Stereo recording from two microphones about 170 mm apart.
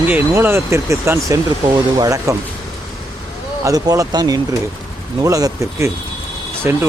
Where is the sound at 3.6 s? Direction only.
20° right (ahead or behind).